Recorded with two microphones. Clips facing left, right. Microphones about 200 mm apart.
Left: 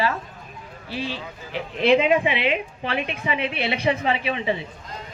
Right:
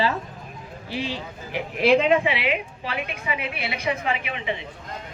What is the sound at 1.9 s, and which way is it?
Speech, 5° left (ahead or behind).